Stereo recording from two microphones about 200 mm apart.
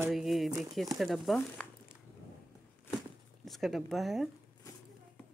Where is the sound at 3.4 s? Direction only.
Centre (ahead or behind).